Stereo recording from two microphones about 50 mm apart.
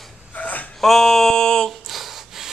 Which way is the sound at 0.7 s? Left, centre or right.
Centre.